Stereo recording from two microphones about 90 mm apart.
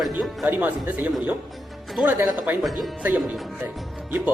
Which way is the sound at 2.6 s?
Centre (ahead or behind).